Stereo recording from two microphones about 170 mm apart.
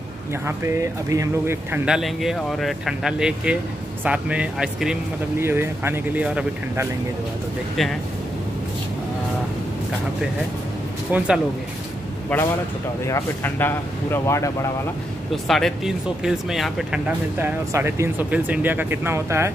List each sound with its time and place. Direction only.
0.5 s speech: 15° right (ahead or behind)
2.0 s speech: centre (ahead or behind)
11.1 s speech: 5° right (ahead or behind)
12.3 s speech: 10° left (ahead or behind)
15.3 s speech: centre (ahead or behind)
17.4 s speech: 15° right (ahead or behind)